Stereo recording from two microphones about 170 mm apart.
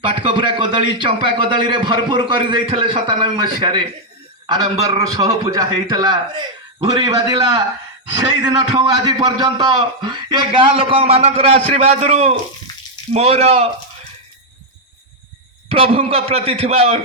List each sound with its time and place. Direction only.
0.0 s a man's voice: 30° right (ahead or behind)
15.7 s a man's voice: 35° right (ahead or behind)